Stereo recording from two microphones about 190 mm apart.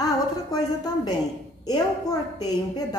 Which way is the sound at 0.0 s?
20° left (ahead or behind).